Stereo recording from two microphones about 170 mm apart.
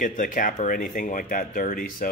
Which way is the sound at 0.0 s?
50° left (ahead or behind).